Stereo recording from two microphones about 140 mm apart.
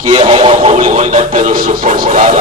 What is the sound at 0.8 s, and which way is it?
Music, 65° right (ahead or behind).